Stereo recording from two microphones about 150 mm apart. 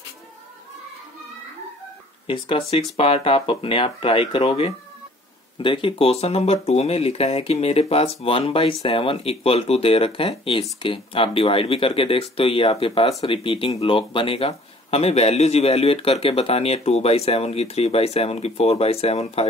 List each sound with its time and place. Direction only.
2.2 s speech: 35° left (ahead or behind)